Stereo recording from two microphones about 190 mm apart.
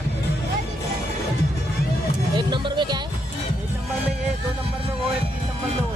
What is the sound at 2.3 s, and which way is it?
Speech, 25° right (ahead or behind).